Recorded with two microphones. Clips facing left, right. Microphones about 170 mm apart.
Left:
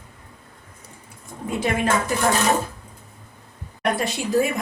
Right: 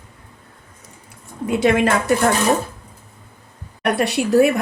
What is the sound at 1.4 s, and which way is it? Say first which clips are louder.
Speech: right 6 dB; 75° right (ahead or behind).